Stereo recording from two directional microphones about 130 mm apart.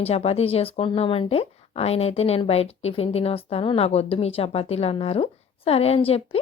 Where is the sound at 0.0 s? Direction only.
55° left (ahead or behind).